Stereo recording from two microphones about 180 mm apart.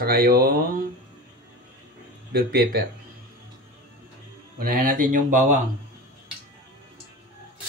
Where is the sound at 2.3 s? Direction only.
60° right (ahead or behind).